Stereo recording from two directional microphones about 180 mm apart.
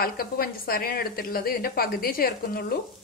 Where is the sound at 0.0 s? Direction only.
55° left (ahead or behind).